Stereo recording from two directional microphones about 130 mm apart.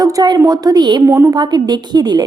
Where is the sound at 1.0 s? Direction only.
20° right (ahead or behind).